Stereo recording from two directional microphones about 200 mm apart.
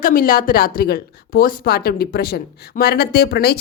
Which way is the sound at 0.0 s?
45° left (ahead or behind).